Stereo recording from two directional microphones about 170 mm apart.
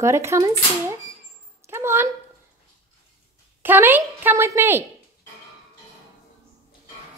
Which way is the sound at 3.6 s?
10° right (ahead or behind).